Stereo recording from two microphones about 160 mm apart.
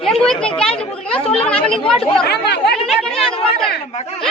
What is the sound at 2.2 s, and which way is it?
Speech, 90° left.